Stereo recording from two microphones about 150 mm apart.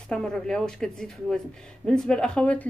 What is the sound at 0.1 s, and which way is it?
Speech, 5° left (ahead or behind).